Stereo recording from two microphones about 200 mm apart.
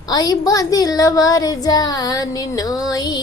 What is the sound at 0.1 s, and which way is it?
Speech, 20° left (ahead or behind).